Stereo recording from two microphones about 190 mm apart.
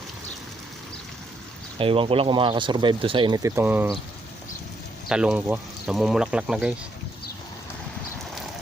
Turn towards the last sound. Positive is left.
turn(degrees=-5)  # may be behind; listen again after turning